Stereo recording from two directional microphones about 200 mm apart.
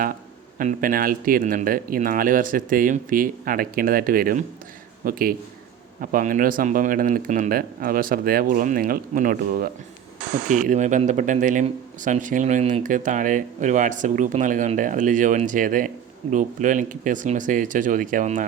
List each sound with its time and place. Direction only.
0.6 s speech: 40° right (ahead or behind)